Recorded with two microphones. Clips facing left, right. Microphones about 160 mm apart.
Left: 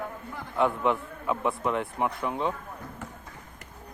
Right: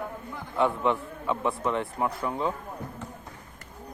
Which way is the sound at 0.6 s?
Centre (ahead or behind).